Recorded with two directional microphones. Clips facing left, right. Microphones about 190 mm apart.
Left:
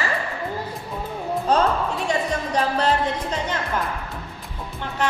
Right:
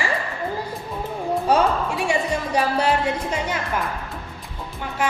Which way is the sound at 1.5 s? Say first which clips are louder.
Even; 10° right (ahead or behind).